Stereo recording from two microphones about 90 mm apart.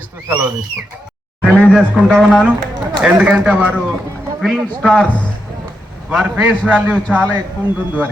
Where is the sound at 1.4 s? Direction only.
15° left (ahead or behind).